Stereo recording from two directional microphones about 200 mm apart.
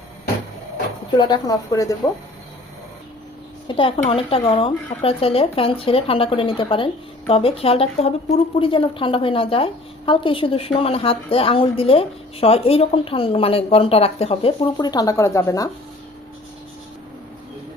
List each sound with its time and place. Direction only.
1.1 s speech: 20° left (ahead or behind)
3.7 s speech: 25° left (ahead or behind)